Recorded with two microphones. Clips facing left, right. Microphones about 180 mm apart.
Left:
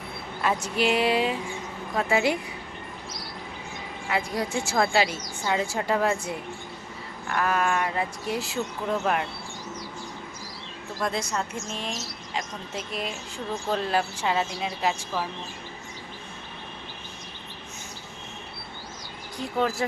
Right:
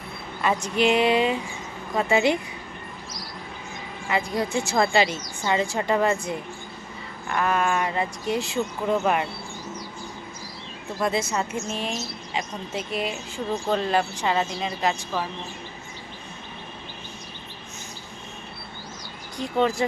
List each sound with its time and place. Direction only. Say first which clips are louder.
0.4 s a woman's voice: right 3 dB; 5° left (ahead or behind)
4.1 s a woman's voice: right 3 dB; 10° left (ahead or behind)
11.0 s a woman's voice: right 4 dB; 5° right (ahead or behind)
19.4 s a woman's voice: right 3 dB; 5° left (ahead or behind)